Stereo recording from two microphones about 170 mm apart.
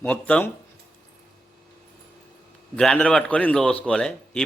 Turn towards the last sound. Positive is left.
turn(degrees=5)  # may be behind; listen again after turning